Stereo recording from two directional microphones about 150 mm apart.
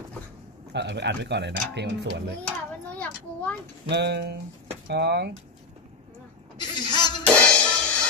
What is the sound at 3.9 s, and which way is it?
Speech, 90° right.